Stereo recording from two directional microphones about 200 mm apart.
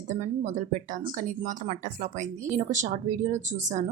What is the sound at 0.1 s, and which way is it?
A woman's voice, 35° right (ahead or behind).